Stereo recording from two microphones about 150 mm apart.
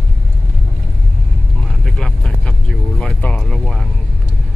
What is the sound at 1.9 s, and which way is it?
Speech, 5° left (ahead or behind).